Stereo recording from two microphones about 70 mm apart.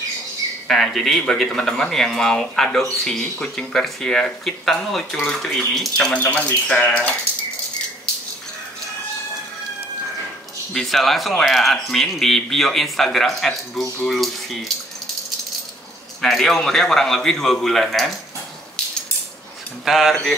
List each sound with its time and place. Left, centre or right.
0.7 s speech: centre
6.1 s speech: centre
10.7 s speech: centre
16.2 s speech: centre
19.8 s speech: centre